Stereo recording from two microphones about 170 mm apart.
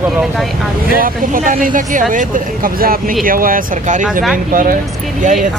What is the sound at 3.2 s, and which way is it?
Speech, 55° right (ahead or behind).